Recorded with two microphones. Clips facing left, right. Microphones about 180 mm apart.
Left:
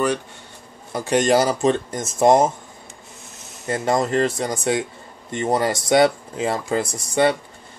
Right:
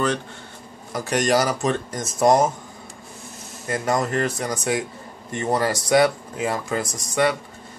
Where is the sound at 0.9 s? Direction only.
30° left (ahead or behind).